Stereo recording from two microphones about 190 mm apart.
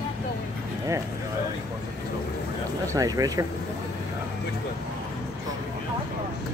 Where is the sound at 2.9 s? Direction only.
20° right (ahead or behind).